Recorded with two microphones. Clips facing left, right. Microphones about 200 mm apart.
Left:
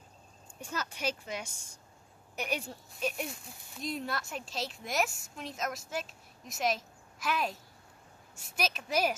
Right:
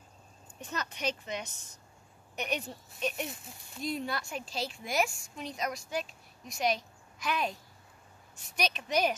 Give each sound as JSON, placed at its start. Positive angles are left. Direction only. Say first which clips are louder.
{"t": 0.6, "sound": "a woman's voice", "louder": "even", "side_deg": 10}
{"t": 8.5, "sound": "speech", "louder": "right 1 dB", "side_deg": 5}